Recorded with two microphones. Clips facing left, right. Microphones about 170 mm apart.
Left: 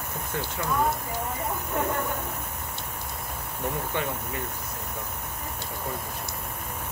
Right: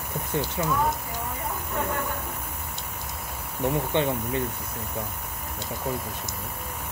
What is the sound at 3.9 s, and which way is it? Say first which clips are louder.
Speech: right 6 dB; 25° right (ahead or behind).